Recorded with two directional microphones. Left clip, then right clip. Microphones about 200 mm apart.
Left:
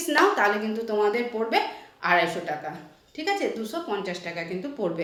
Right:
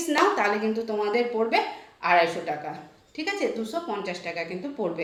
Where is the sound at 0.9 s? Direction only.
20° left (ahead or behind).